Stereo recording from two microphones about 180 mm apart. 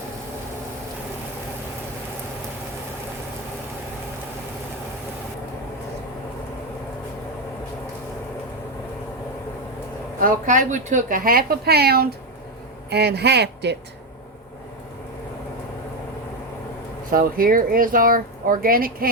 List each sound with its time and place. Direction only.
10.2 s speech: 45° right (ahead or behind); by 13.7 s 70° right (ahead or behind)
17.1 s speech: 50° right (ahead or behind)